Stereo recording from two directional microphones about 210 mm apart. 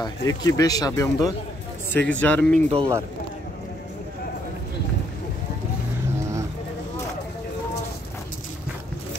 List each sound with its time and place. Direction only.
0.0 s speech: 20° left (ahead or behind)
2.5 s a man's voice: 30° right (ahead or behind)